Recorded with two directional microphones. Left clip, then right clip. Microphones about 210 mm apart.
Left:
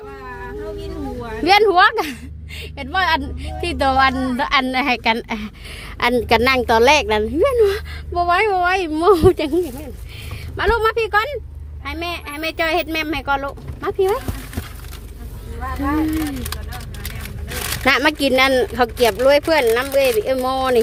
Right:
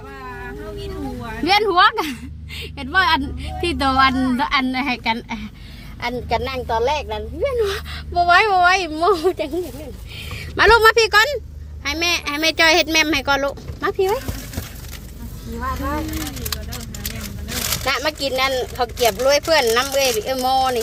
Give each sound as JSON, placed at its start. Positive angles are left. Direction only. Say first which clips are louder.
{"t": 1.5, "sound": "a woman's voice", "louder": "left 2 dB", "side_deg": 25}
{"t": 4.4, "sound": "a woman's voice", "louder": "left 2 dB", "side_deg": 30}
{"t": 7.5, "sound": "speech", "louder": "left 5 dB", "side_deg": 10}
{"t": 10.6, "sound": "speech", "louder": "right 5 dB", "side_deg": -15}
{"t": 17.8, "sound": "speech", "louder": "left 7 dB", "side_deg": 25}